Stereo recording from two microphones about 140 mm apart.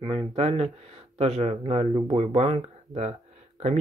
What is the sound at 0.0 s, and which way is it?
Speech, 45° right (ahead or behind).